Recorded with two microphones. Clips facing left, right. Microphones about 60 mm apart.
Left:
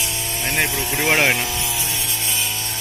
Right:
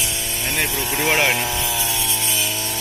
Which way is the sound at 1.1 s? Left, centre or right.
Left.